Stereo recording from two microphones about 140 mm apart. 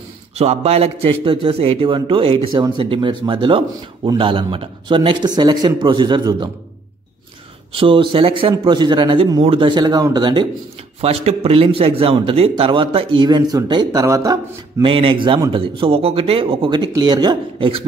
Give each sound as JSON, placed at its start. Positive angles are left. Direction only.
{"t": 0.4, "sound": "a man's voice", "side_deg": -50}
{"t": 7.7, "sound": "a man's voice", "side_deg": -40}
{"t": 11.0, "sound": "a man's voice", "side_deg": -45}
{"t": 14.9, "sound": "a man's voice", "side_deg": -40}